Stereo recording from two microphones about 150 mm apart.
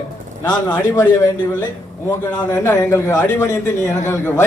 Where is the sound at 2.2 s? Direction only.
15° left (ahead or behind).